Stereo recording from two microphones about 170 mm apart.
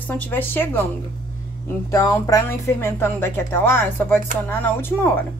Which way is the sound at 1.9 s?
20° left (ahead or behind).